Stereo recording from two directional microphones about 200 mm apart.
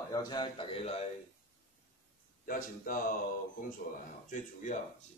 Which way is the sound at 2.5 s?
45° left (ahead or behind).